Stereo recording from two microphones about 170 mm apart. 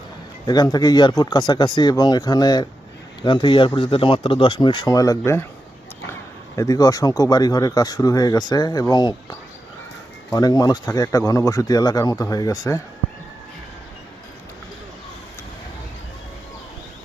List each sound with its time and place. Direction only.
0.4 s speech: 25° left (ahead or behind)
6.6 s speech: 20° left (ahead or behind)
10.3 s speech: 20° left (ahead or behind)